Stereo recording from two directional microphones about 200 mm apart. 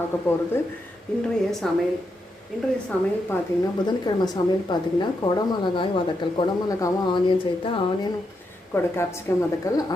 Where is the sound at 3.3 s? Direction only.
20° left (ahead or behind).